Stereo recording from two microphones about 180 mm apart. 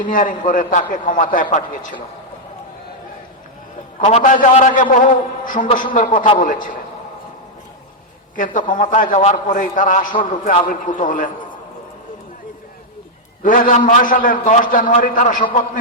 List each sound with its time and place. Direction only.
0.0 s a man's voice: 50° left (ahead or behind)
4.0 s a man's voice: 40° left (ahead or behind)
8.4 s a man's voice: 45° left (ahead or behind)
13.4 s a man's voice: 50° left (ahead or behind)